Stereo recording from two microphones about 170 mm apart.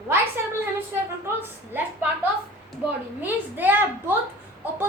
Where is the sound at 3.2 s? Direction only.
10° right (ahead or behind).